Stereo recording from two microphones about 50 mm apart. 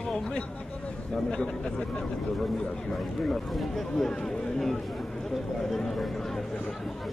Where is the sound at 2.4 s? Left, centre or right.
Centre.